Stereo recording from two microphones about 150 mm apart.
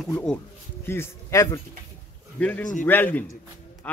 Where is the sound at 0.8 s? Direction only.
15° left (ahead or behind).